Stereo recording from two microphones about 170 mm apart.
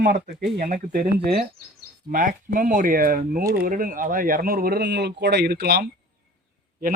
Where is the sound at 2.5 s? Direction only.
50° right (ahead or behind); by 5.9 s 70° right (ahead or behind).